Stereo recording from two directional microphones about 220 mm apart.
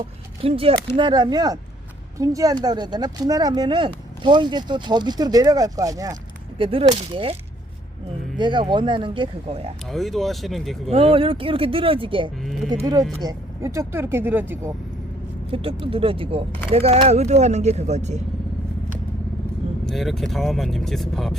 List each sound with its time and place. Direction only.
0.0 s speech: 25° right (ahead or behind)
8.4 s speech: 20° right (ahead or behind)
9.9 s speech: centre (ahead or behind)
10.8 s speech: 25° right (ahead or behind); by 14.7 s 10° right (ahead or behind)
15.5 s speech: 25° right (ahead or behind)
19.8 s speech: centre (ahead or behind)